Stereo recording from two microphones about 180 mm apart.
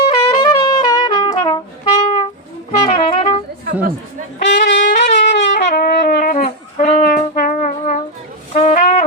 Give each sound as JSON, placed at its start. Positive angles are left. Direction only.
{"t": 0.1, "sound": "brass instrument", "side_deg": 25}
{"t": 2.8, "sound": "music", "side_deg": 30}
{"t": 4.4, "sound": "music", "side_deg": 75}
{"t": 4.9, "sound": "wind instrument", "side_deg": 40}
{"t": 5.5, "sound": "shofar", "side_deg": 60}
{"t": 6.1, "sound": "music", "side_deg": 45}
{"t": 8.5, "sound": "brass instrument", "side_deg": 40}